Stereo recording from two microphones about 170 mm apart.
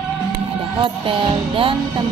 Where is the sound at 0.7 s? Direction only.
30° right (ahead or behind).